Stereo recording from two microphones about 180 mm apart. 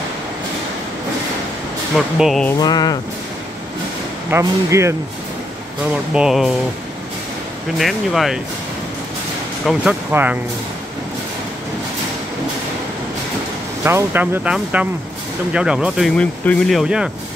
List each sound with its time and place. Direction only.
2.0 s speech: centre (ahead or behind)
2.6 s a sound: 20° left (ahead or behind)
4.3 s speech: 15° right (ahead or behind)
5.9 s speech: 5° right (ahead or behind)
7.7 s speech: centre (ahead or behind)
9.7 s speech: 5° right (ahead or behind)
13.8 s speech: 10° right (ahead or behind)